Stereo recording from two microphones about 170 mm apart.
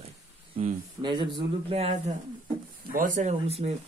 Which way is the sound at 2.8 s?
50° right (ahead or behind).